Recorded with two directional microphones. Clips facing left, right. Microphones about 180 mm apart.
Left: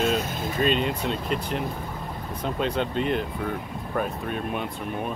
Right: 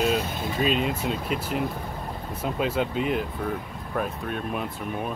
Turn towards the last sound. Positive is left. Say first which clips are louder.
# even
turn(degrees=0)  # may be behind; listen again after turning